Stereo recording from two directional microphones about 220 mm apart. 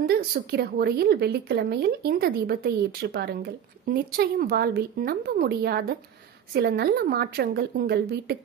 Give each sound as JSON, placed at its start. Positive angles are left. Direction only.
{"t": 0.0, "sound": "speech", "side_deg": -45}